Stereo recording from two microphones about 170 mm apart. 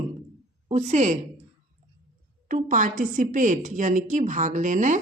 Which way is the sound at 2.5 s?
50° right (ahead or behind).